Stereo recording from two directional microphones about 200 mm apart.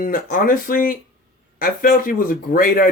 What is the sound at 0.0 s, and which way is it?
Speech, 45° left (ahead or behind).